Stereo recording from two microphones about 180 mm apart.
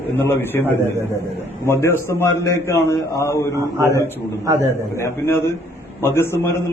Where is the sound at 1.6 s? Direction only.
15° left (ahead or behind).